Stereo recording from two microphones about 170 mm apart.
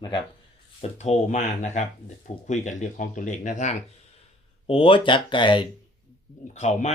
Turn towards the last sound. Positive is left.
turn(degrees=40)  # may be behind; listen again after turning